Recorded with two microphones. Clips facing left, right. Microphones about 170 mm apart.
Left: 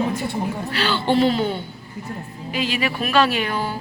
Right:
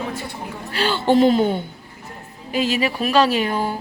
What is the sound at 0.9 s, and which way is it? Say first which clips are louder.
Speech: right 4 dB; 45° right (ahead or behind).